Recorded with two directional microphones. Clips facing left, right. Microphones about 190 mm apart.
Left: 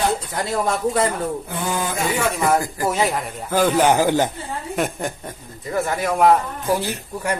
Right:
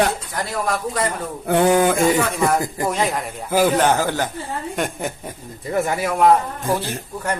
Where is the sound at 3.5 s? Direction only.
10° right (ahead or behind).